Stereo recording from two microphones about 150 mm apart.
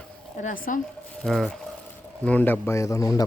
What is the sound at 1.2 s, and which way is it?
A man's voice, centre (ahead or behind).